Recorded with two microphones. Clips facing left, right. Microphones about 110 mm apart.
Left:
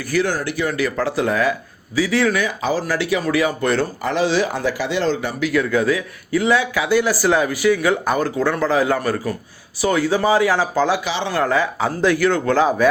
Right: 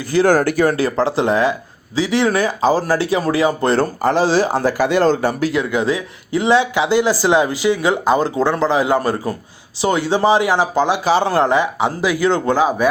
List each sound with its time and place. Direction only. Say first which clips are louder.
0.0 s speech: right 4 dB; 25° right (ahead or behind)
0.3 s speech: right 8 dB; 50° right (ahead or behind)
0.8 s speech: right 3 dB; 30° right (ahead or behind)
2.3 s speech: right 5 dB; 35° right (ahead or behind)
5.5 s speech: even; 20° right (ahead or behind)
11.0 s speech: right 8 dB; 40° right (ahead or behind)
11.3 s speech: right 3 dB; 20° right (ahead or behind)